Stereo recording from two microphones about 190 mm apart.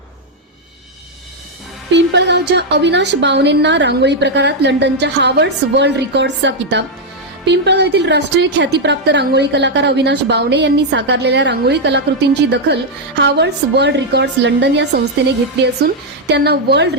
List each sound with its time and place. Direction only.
1.9 s a woman's voice: 65° right (ahead or behind)
16.3 s a woman's voice: 60° right (ahead or behind)